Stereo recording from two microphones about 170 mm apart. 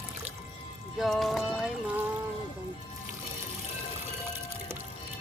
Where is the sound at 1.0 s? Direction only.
Centre (ahead or behind).